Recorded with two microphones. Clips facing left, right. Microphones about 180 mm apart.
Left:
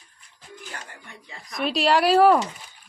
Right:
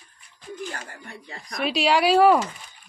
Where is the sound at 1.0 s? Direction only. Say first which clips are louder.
Right 4 dB; 45° right (ahead or behind).